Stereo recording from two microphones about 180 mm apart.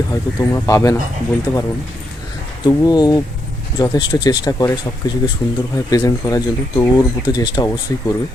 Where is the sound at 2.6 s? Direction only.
25° left (ahead or behind).